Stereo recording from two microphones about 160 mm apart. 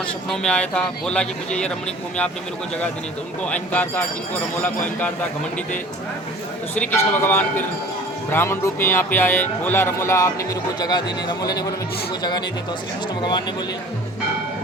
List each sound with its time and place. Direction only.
0.3 s speech: 5° left (ahead or behind)
3.4 s speech: 10° left (ahead or behind)
6.7 s speech: 15° left (ahead or behind)